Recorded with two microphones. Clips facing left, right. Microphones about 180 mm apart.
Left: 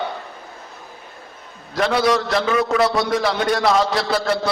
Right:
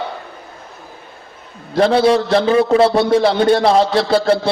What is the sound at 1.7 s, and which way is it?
A man's voice, 30° right (ahead or behind).